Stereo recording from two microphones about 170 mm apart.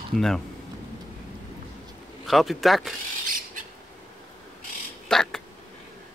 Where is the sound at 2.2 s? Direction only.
Centre (ahead or behind).